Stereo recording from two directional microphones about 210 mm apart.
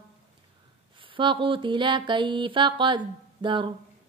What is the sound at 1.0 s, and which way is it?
Mantra, 25° right (ahead or behind).